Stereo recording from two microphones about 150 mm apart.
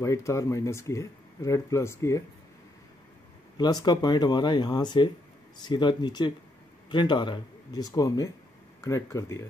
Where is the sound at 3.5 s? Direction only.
25° left (ahead or behind).